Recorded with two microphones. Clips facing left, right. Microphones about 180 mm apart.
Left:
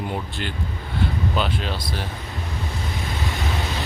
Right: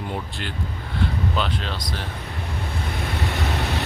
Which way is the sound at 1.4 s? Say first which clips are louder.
Left 1 dB; 10° left (ahead or behind).